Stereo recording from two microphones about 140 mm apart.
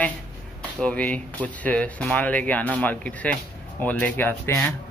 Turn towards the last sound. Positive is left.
turn(degrees=15)  # may be behind; listen again after turning